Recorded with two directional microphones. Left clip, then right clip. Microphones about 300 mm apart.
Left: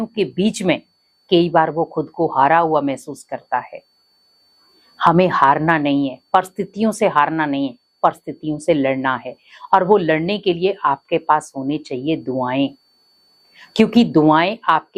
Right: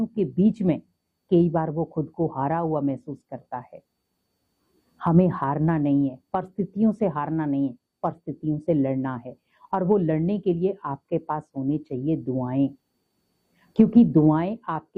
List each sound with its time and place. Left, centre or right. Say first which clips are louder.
0.0 s speech: left 5 dB; centre
4.9 s speech: left 10 dB; centre
12.2 s speech: left 8 dB; centre
13.5 s speech: left 5 dB; centre